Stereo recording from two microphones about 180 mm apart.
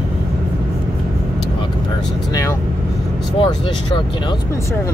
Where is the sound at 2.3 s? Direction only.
15° left (ahead or behind).